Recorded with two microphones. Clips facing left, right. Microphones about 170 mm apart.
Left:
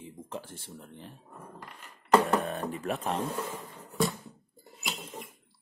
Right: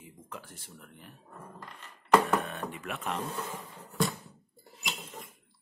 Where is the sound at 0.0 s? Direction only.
30° left (ahead or behind).